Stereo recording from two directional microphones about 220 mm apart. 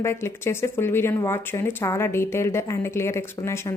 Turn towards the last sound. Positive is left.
turn(degrees=10)  # may be behind; listen again after turning